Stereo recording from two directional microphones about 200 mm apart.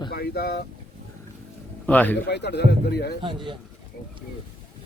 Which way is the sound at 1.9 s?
10° left (ahead or behind).